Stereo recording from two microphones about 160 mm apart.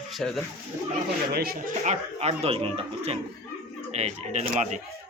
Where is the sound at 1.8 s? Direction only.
45° right (ahead or behind).